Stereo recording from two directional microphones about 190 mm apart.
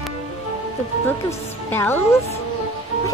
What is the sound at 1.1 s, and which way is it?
Speech, 10° left (ahead or behind).